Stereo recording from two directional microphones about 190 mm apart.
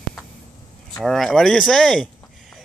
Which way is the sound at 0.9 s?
Centre (ahead or behind).